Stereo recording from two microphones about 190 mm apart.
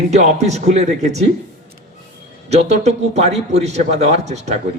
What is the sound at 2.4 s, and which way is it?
A man's voice, 35° right (ahead or behind).